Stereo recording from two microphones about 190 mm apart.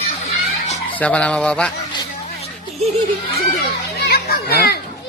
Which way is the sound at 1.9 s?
25° left (ahead or behind).